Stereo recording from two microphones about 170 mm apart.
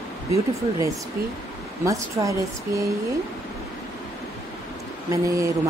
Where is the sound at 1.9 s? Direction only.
20° right (ahead or behind).